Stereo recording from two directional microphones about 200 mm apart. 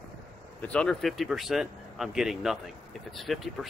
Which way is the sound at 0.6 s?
5° left (ahead or behind).